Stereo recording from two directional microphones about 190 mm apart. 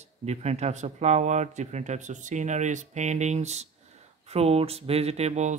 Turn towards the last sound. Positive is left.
turn(degrees=-35)  # may be behind; listen again after turning